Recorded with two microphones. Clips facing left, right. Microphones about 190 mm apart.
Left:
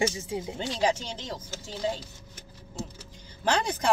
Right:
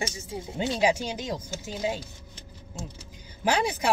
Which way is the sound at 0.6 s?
10° right (ahead or behind).